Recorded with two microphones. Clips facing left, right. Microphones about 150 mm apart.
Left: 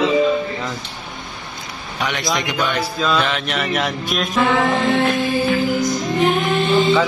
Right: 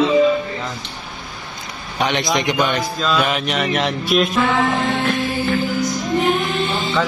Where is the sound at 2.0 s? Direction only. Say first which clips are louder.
Right 3 dB; 20° right (ahead or behind).